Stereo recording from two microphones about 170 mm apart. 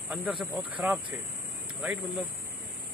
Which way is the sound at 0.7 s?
5° right (ahead or behind).